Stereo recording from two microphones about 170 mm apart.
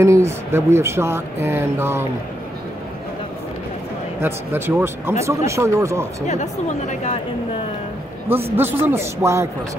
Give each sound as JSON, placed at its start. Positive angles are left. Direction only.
{"t": 0.0, "sound": "speech", "side_deg": -15}
{"t": 4.2, "sound": "speech", "side_deg": -15}
{"t": 6.2, "sound": "speech", "side_deg": 45}
{"t": 8.5, "sound": "speech", "side_deg": -10}